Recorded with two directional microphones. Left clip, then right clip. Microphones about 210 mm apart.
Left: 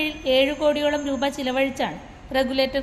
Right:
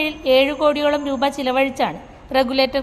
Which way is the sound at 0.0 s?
10° right (ahead or behind).